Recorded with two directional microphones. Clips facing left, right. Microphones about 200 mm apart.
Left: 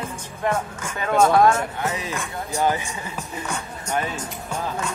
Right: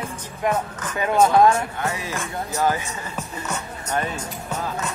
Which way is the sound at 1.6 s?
20° left (ahead or behind).